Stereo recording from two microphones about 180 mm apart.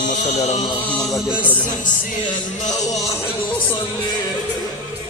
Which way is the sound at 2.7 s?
20° left (ahead or behind).